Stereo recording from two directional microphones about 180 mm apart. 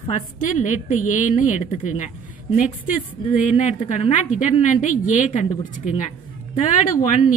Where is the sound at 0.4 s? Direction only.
45° left (ahead or behind).